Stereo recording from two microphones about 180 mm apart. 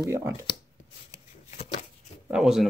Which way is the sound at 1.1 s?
40° left (ahead or behind).